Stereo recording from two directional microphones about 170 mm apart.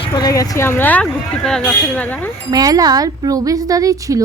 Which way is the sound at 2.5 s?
20° right (ahead or behind).